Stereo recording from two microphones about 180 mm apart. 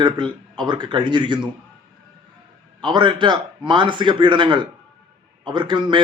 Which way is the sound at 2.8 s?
25° right (ahead or behind).